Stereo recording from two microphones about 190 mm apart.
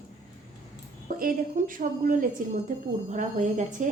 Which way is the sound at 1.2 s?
45° right (ahead or behind).